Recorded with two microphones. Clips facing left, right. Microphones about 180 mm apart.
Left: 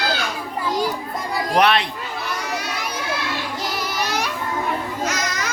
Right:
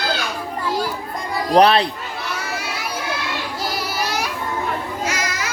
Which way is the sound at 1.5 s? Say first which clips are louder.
Right 5 dB; 35° right (ahead or behind).